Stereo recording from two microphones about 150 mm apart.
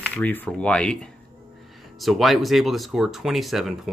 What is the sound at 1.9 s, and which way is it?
Speech, centre (ahead or behind).